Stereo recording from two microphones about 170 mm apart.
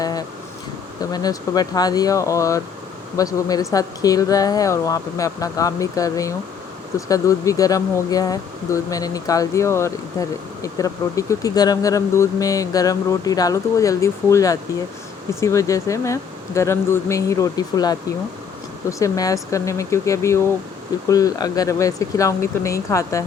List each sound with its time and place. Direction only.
0.0 s guitar: 20° left (ahead or behind)
1.1 s speech: 20° left (ahead or behind)